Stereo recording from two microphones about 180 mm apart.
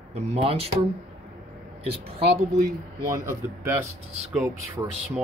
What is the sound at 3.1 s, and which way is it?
A man's voice, 15° right (ahead or behind).